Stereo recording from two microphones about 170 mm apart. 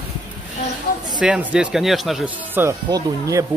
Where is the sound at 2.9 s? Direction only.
20° right (ahead or behind).